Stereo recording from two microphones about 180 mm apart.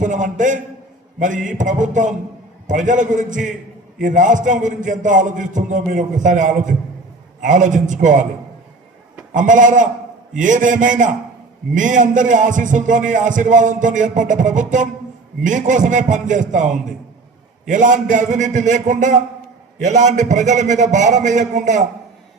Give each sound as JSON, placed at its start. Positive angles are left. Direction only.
{"t": 0.0, "sound": "a man's voice", "side_deg": -45}
{"t": 9.3, "sound": "a man's voice", "side_deg": -45}